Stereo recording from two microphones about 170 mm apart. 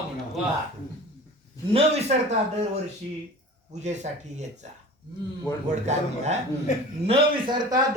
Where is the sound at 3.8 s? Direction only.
45° right (ahead or behind).